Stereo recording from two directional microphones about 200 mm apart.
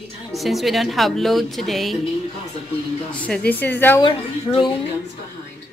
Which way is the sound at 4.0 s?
25° left (ahead or behind).